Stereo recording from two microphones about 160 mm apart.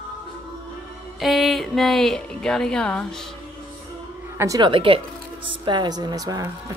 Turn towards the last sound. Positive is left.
turn(degrees=-25)  # may be behind; listen again after turning